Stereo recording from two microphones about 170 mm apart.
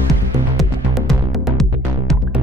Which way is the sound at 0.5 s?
Centre (ahead or behind).